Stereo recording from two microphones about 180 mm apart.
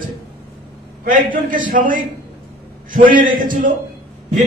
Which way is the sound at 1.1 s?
50° right (ahead or behind).